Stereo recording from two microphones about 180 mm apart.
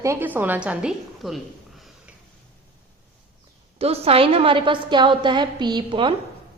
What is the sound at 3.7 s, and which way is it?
A woman's voice, 35° right (ahead or behind).